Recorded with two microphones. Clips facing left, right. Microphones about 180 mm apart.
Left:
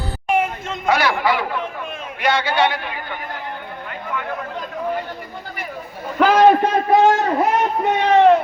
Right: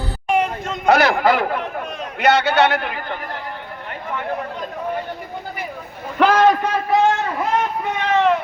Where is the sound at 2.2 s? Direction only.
70° right (ahead or behind).